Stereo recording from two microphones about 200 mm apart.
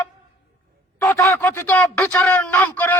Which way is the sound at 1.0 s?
15° left (ahead or behind).